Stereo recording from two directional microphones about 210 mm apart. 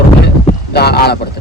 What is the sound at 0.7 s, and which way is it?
Speech, 50° left (ahead or behind).